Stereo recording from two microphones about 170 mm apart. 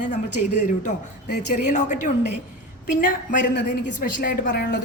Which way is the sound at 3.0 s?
55° left (ahead or behind).